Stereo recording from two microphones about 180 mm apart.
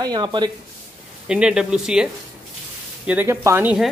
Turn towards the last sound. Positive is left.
turn(degrees=-15)  # may be behind; listen again after turning